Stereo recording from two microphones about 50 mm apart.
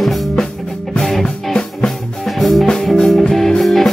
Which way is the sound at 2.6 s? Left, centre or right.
Centre.